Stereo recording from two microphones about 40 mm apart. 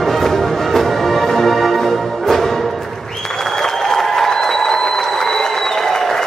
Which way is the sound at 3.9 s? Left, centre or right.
Centre.